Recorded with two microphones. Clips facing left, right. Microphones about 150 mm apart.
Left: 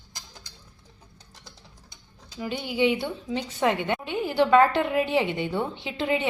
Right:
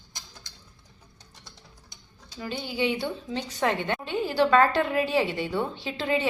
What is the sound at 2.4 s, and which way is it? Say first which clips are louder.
A woman's voice: left 4 dB; 15° left (ahead or behind).